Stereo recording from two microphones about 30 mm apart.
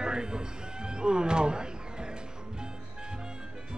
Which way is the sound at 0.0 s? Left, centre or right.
Right.